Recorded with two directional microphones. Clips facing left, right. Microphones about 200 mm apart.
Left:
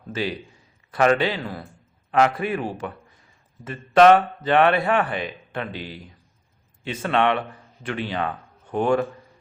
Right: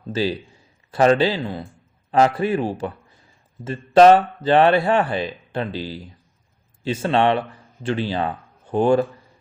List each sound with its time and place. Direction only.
0.1 s a man's voice: 30° right (ahead or behind)